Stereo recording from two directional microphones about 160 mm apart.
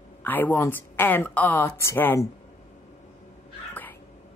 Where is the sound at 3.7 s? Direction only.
10° left (ahead or behind).